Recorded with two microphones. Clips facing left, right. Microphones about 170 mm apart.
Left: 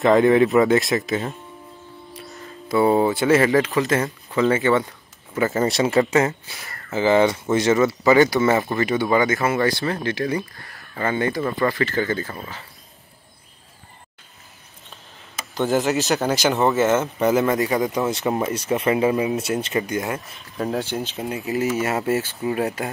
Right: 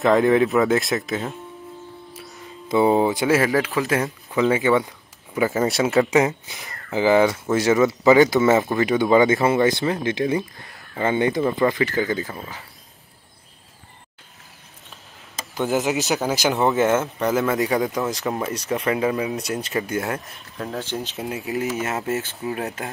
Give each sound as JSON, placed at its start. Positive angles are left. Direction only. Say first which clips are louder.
{"t": 0.0, "sound": "speech", "louder": "left 2 dB", "side_deg": 0}
{"t": 2.7, "sound": "speech", "louder": "even", "side_deg": -15}
{"t": 6.0, "sound": "speech", "louder": "right 1 dB", "side_deg": -15}
{"t": 15.5, "sound": "speech", "louder": "left 2 dB", "side_deg": -10}
{"t": 18.9, "sound": "speech", "louder": "left 3 dB", "side_deg": 20}
{"t": 19.2, "sound": "speech", "louder": "left 3 dB", "side_deg": 0}
{"t": 19.7, "sound": "speech", "louder": "left 1 dB", "side_deg": 15}
{"t": 21.0, "sound": "speech", "louder": "left 1 dB", "side_deg": 0}